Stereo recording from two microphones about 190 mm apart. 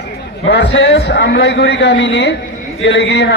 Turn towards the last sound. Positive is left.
turn(degrees=65)  # may be behind; listen again after turning